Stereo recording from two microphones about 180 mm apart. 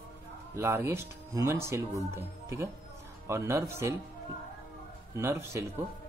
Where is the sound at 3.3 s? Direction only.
15° right (ahead or behind).